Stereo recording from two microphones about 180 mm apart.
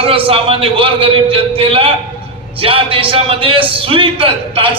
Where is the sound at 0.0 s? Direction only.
30° right (ahead or behind).